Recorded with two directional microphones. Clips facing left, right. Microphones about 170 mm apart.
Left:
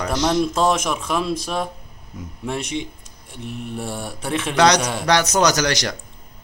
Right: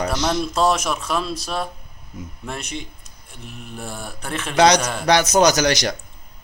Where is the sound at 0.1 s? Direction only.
15° left (ahead or behind).